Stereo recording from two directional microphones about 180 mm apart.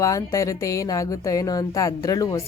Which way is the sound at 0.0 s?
20° left (ahead or behind).